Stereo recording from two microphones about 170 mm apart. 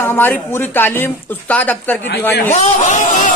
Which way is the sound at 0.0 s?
10° left (ahead or behind).